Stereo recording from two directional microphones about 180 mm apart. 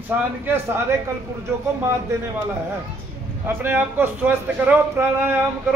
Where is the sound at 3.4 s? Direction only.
10° right (ahead or behind).